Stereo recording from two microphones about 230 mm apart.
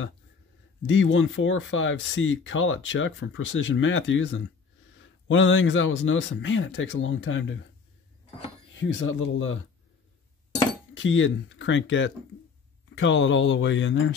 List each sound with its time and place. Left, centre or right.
0.8 s speech: left
8.7 s speech: left
11.0 s speech: left